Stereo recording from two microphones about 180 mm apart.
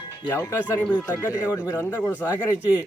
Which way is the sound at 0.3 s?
10° left (ahead or behind).